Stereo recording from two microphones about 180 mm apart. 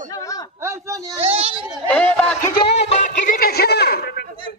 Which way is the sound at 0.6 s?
15° right (ahead or behind).